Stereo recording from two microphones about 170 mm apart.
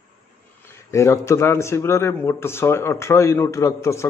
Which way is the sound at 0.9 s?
15° left (ahead or behind).